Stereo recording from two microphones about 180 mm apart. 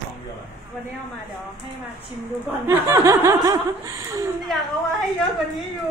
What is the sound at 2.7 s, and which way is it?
Speech, 15° right (ahead or behind).